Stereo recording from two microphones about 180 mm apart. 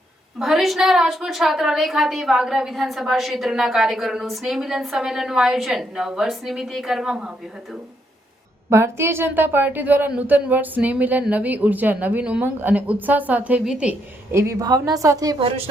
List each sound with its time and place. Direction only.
0.3 s a woman's voice: centre (ahead or behind)
8.7 s a woman's voice: 15° right (ahead or behind)
14.3 s a woman's voice: 20° right (ahead or behind)